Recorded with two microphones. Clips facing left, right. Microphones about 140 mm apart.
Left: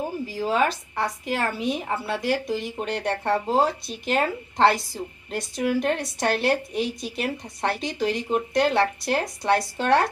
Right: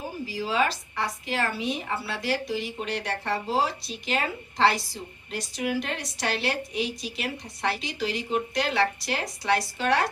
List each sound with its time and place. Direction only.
0.3 s a woman's voice: 50° left (ahead or behind)